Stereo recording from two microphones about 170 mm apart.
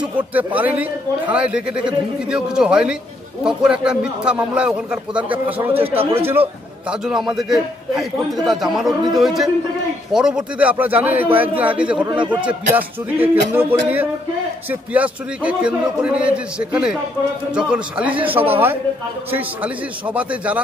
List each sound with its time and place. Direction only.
0.6 s a man's voice: 10° right (ahead or behind)